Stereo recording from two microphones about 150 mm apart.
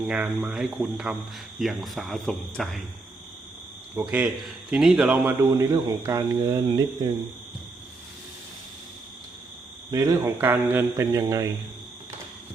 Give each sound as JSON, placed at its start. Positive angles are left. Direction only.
{"t": 0.0, "sound": "speech", "side_deg": -5}
{"t": 4.0, "sound": "a man's voice", "side_deg": -15}
{"t": 9.9, "sound": "speech", "side_deg": -20}